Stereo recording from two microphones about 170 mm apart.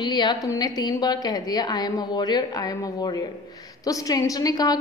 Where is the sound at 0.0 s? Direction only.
25° left (ahead or behind).